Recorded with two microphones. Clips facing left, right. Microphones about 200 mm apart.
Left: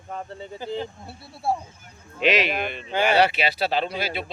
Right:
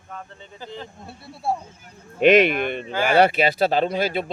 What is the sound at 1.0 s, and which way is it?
Speech, centre (ahead or behind).